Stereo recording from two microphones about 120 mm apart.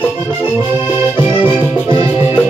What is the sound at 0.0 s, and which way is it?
Accordion, 15° left (ahead or behind).